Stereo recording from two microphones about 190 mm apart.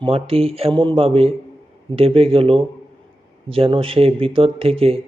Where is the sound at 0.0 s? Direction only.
30° right (ahead or behind).